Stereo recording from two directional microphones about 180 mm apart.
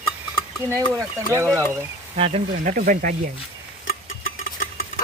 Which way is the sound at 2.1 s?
35° right (ahead or behind).